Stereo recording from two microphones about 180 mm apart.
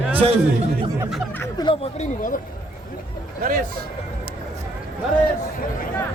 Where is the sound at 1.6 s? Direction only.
20° left (ahead or behind).